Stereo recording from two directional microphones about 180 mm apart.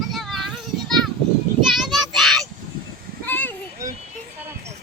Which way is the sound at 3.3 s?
10° left (ahead or behind).